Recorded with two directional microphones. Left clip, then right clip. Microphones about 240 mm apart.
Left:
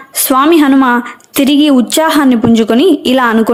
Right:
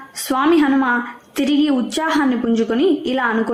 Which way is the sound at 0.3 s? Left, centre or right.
Left.